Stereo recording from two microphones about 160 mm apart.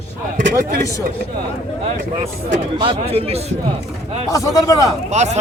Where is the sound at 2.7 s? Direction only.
35° right (ahead or behind).